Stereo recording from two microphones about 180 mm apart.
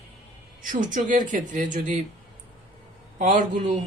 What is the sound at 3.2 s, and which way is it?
Speech, 45° right (ahead or behind).